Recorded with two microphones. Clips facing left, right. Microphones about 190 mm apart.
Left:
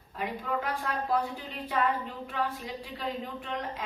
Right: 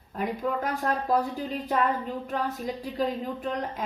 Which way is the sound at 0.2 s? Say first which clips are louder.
Right 4 dB; 40° right (ahead or behind).